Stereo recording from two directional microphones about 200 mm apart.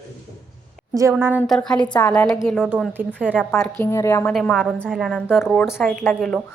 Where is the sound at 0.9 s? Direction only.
15° right (ahead or behind).